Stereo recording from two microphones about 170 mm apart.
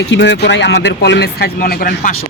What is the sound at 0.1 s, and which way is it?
Speech, 90° left.